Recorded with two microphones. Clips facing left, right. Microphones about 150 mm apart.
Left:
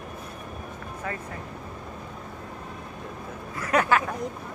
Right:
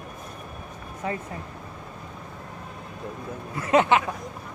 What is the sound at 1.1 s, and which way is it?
Speech, 20° right (ahead or behind).